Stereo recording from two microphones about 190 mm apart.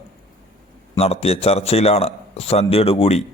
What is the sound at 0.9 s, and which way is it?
A man's voice, 30° left (ahead or behind).